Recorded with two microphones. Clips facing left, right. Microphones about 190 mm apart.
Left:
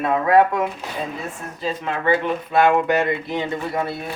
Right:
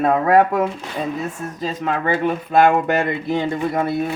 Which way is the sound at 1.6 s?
45° right (ahead or behind).